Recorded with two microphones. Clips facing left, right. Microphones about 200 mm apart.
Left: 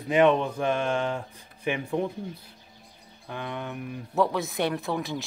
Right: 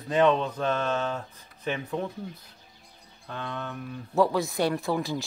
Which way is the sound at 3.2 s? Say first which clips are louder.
Left 1 dB; 15° left (ahead or behind).